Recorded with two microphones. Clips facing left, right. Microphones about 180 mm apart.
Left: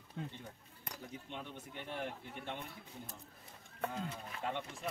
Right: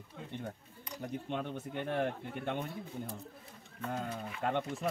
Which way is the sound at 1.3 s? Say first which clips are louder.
Right 10 dB; 55° right (ahead or behind).